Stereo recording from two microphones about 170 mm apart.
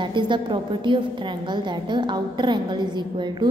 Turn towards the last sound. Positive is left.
turn(degrees=-25)  # may be behind; listen again after turning